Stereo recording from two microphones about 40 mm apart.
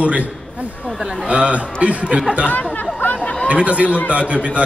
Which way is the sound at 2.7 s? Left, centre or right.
Left.